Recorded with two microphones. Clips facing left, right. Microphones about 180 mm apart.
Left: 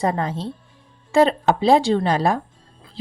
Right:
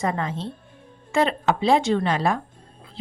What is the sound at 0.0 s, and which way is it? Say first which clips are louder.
A woman's voice: left 3 dB; 35° left (ahead or behind).